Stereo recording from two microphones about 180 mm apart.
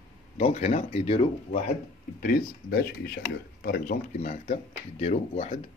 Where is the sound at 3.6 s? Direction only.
50° left (ahead or behind).